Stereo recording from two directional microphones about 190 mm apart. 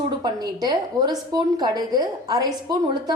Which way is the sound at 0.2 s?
20° right (ahead or behind).